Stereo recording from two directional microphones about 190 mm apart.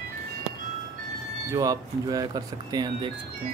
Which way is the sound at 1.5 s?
20° right (ahead or behind).